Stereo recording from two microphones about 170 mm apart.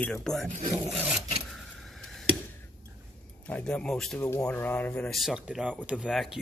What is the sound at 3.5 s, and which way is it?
Speech, 5° left (ahead or behind).